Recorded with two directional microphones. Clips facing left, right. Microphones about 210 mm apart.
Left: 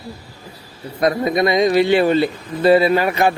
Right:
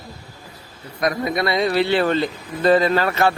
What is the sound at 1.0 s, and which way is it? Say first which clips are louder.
A man's voice: left 5 dB; 25° left (ahead or behind).